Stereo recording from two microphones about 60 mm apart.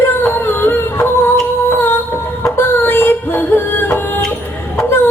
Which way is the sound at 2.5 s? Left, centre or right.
Left.